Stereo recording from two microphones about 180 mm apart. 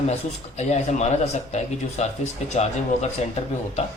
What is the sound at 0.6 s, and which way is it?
Speech, 40° left (ahead or behind).